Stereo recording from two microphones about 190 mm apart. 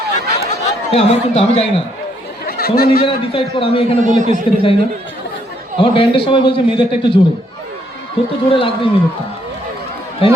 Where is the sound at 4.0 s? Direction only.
40° right (ahead or behind).